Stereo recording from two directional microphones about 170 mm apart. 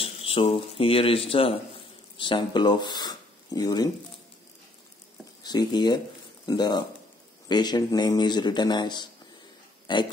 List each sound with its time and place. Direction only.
0.0 s speech: 35° left (ahead or behind)
5.4 s speech: 25° left (ahead or behind)